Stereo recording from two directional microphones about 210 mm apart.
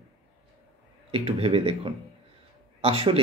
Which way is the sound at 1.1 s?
25° right (ahead or behind).